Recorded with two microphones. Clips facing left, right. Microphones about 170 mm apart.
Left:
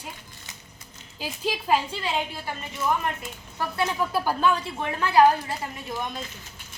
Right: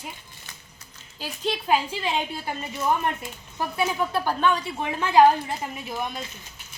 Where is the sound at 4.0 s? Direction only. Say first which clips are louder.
Left 1 dB; 5° left (ahead or behind).